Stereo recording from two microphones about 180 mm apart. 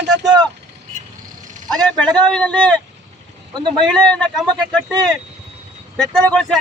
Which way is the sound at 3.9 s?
5° left (ahead or behind).